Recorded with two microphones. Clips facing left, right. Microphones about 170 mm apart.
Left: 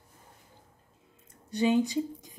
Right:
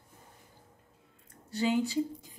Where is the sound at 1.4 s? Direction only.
20° left (ahead or behind).